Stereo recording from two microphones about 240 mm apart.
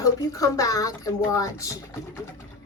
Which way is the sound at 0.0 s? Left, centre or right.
Centre.